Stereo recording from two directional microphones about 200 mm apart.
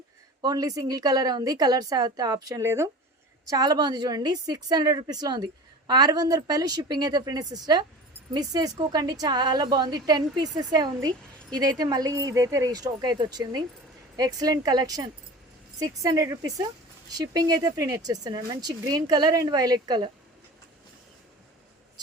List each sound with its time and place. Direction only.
0.4 s a woman's voice: 20° right (ahead or behind)